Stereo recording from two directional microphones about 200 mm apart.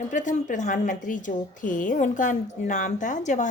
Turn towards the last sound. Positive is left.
turn(degrees=40)  # may be behind; listen again after turning